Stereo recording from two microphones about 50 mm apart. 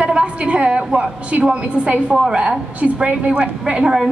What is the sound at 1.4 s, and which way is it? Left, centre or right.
A woman's voice, right.